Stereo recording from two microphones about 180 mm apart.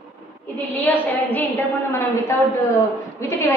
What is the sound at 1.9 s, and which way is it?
A woman's voice, 15° left (ahead or behind).